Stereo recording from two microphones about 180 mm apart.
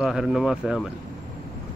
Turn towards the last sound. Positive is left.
turn(degrees=-5)  # may be behind; listen again after turning